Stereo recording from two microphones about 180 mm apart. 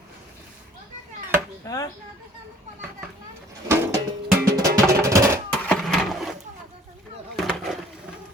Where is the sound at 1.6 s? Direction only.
20° left (ahead or behind).